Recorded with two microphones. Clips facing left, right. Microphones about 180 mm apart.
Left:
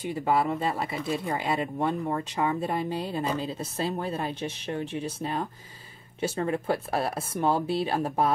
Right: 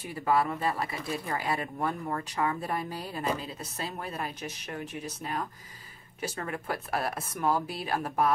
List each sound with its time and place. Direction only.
0.1 s speech: 25° left (ahead or behind)